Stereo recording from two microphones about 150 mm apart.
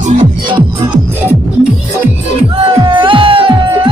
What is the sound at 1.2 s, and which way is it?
Music, 10° right (ahead or behind).